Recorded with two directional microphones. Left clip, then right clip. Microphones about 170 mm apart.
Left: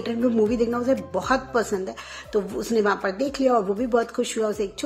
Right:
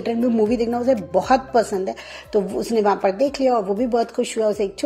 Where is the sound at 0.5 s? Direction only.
10° right (ahead or behind).